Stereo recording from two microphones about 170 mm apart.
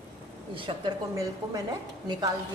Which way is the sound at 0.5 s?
30° right (ahead or behind).